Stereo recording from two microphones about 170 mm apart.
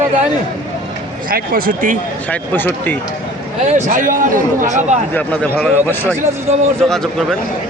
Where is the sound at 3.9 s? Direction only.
50° right (ahead or behind).